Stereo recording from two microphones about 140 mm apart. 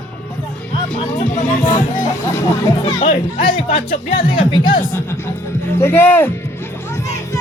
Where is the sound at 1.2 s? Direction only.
60° left (ahead or behind).